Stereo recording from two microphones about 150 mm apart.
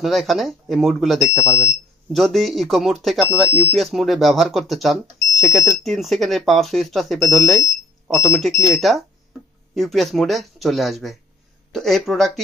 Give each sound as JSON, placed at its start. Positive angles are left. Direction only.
{"t": 0.0, "sound": "speech", "side_deg": 0}
{"t": 1.4, "sound": "speech", "side_deg": 20}
{"t": 2.1, "sound": "speech", "side_deg": 0}